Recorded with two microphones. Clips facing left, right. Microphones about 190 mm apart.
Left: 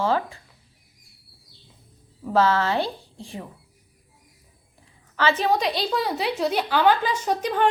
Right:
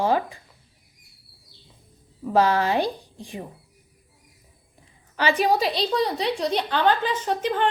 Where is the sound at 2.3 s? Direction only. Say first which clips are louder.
Right 1 dB; 15° right (ahead or behind).